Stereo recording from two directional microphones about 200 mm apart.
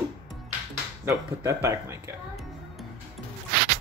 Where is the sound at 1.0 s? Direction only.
15° right (ahead or behind).